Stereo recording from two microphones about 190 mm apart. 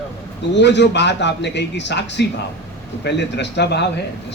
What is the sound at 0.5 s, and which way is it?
A man's voice, 65° left (ahead or behind).